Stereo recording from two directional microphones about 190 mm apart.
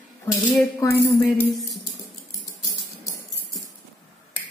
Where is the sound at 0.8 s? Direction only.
10° left (ahead or behind).